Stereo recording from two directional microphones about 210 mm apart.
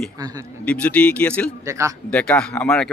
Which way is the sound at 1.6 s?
15° right (ahead or behind).